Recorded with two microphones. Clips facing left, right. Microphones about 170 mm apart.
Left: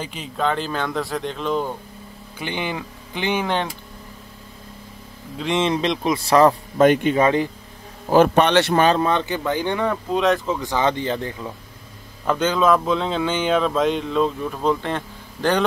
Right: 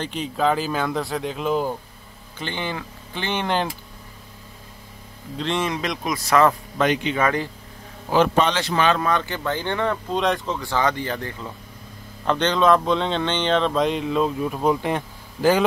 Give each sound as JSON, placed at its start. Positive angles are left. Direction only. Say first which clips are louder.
{"t": 0.0, "sound": "speech", "louder": "right 2 dB", "side_deg": 0}
{"t": 2.3, "sound": "speech", "louder": "left 2 dB", "side_deg": 15}
{"t": 5.6, "sound": "speech", "louder": "left 5 dB", "side_deg": 25}
{"t": 6.8, "sound": "speech", "louder": "left 6 dB", "side_deg": 50}
{"t": 7.2, "sound": "speech", "louder": "left 4 dB", "side_deg": 25}
{"t": 8.1, "sound": "a man's voice", "louder": "left 4 dB", "side_deg": 55}
{"t": 8.7, "sound": "speech", "louder": "left 3 dB", "side_deg": 40}
{"t": 9.0, "sound": "speech", "louder": "left 2 dB", "side_deg": 20}
{"t": 10.6, "sound": "speech", "louder": "left 2 dB", "side_deg": 20}
{"t": 12.3, "sound": "speech", "louder": "even", "side_deg": 5}